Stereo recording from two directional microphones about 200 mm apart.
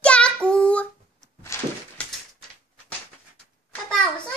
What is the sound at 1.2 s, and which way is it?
Thunk, 15° left (ahead or behind).